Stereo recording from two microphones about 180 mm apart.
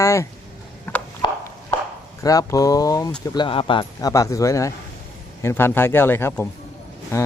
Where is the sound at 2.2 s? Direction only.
20° left (ahead or behind).